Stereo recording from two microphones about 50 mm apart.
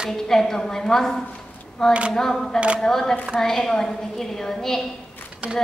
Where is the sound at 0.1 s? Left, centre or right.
Centre.